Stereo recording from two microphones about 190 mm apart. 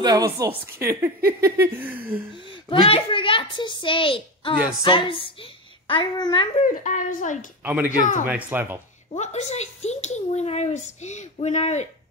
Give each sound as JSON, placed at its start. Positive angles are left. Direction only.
{"t": 0.0, "sound": "a woman's voice", "side_deg": -20}
{"t": 2.7, "sound": "a child's voice", "side_deg": 30}
{"t": 6.6, "sound": "a woman's voice", "side_deg": 40}
{"t": 7.6, "sound": "a woman's voice", "side_deg": -10}
{"t": 9.1, "sound": "speech", "side_deg": 35}